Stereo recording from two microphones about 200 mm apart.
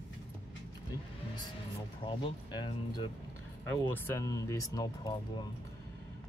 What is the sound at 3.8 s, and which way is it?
Speech, 10° left (ahead or behind).